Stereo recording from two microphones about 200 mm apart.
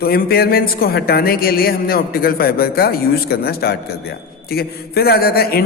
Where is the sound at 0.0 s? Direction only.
50° left (ahead or behind).